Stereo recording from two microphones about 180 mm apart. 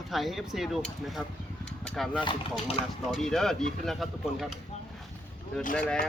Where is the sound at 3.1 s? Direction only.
Centre (ahead or behind).